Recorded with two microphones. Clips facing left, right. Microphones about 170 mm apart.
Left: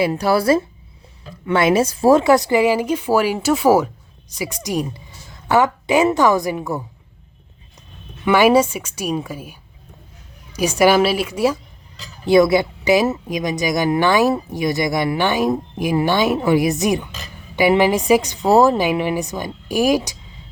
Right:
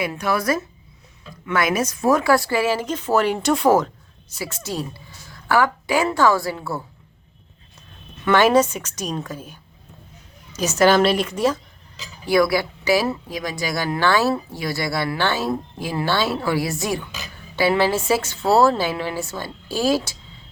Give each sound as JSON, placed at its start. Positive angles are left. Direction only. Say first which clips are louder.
{"t": 0.0, "sound": "a woman's voice", "louder": "left 6 dB", "side_deg": 35}
{"t": 8.2, "sound": "speech", "louder": "left 2 dB", "side_deg": 10}
{"t": 12.2, "sound": "speech", "louder": "left 5 dB", "side_deg": 20}